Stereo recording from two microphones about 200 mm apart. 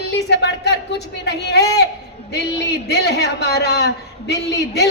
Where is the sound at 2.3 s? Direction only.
55° left (ahead or behind).